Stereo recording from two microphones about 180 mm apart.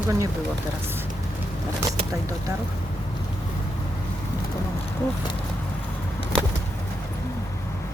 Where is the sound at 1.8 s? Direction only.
15° right (ahead or behind).